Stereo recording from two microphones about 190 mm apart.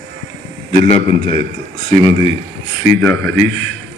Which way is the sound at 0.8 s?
35° left (ahead or behind).